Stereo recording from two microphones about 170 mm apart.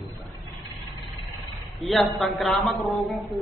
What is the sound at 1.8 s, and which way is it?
A man's voice, centre (ahead or behind).